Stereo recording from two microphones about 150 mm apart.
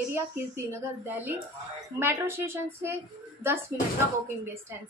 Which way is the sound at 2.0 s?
15° right (ahead or behind).